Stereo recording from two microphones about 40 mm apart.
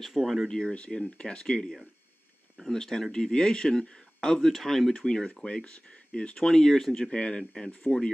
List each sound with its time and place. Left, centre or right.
0.0 s speech: centre
0.5 s speech: centre
2.6 s speech: centre
4.4 s speech: centre
5.0 s speech: left
6.3 s speech: centre
7.1 s speech: left